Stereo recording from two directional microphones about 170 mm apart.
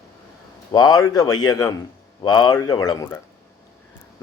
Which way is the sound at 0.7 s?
25° left (ahead or behind).